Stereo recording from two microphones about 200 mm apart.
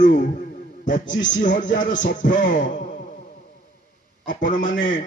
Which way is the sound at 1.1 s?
40° left (ahead or behind).